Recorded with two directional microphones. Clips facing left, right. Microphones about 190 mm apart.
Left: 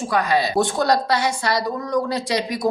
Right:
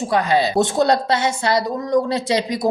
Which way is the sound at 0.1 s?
25° right (ahead or behind).